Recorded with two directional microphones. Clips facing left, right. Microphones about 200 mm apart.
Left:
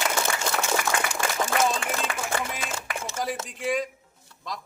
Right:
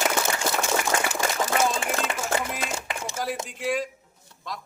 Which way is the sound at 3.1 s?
10° right (ahead or behind).